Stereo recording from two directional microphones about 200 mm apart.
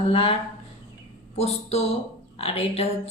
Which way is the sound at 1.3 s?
30° left (ahead or behind).